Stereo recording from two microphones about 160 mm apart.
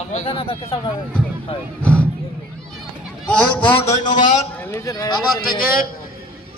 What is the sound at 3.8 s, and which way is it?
Speech, 50° left (ahead or behind).